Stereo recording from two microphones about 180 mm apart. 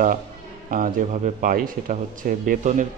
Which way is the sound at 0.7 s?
50° right (ahead or behind).